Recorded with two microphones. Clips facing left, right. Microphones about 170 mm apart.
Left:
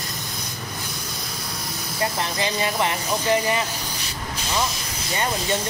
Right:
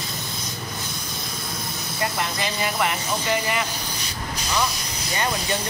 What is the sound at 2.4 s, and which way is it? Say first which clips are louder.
Speech: left 2 dB; 25° left (ahead or behind).